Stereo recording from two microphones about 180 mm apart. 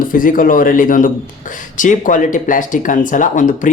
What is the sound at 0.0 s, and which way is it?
A man's voice, 50° left (ahead or behind).